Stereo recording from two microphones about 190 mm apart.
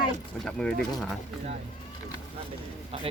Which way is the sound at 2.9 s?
30° right (ahead or behind).